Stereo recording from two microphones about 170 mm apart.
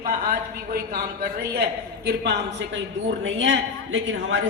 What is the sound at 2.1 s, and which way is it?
Speech, 80° right.